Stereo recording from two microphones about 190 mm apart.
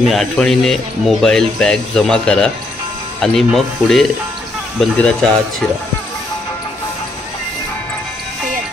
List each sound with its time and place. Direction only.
0.1 s speech: centre (ahead or behind)